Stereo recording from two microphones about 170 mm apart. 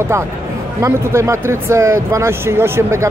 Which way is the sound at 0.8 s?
15° right (ahead or behind).